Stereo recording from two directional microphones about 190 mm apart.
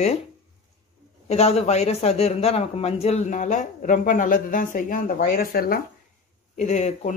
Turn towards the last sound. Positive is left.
turn(degrees=40)  # may be behind; listen again after turning